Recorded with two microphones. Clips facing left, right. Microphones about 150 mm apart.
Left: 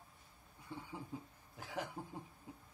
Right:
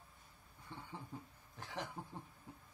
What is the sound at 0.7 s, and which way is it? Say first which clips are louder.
Speech: left 3 dB; 10° left (ahead or behind).